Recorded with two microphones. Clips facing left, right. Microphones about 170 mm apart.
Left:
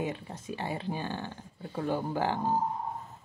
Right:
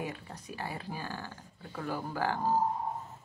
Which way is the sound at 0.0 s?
25° left (ahead or behind).